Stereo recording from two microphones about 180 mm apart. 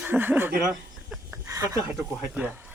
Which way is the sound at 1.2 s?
15° right (ahead or behind).